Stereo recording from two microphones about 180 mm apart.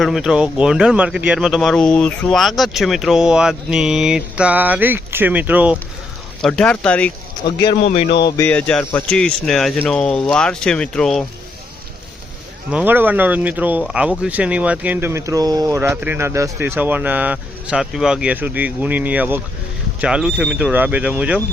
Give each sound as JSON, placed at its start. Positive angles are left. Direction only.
{"t": 0.0, "sound": "speech", "side_deg": 0}
{"t": 6.4, "sound": "speech", "side_deg": 5}
{"t": 7.9, "sound": "speech", "side_deg": 30}
{"t": 8.2, "sound": "speech", "side_deg": 10}
{"t": 12.7, "sound": "speech", "side_deg": -10}